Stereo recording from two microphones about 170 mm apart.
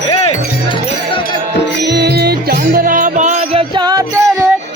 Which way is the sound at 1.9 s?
75° right (ahead or behind).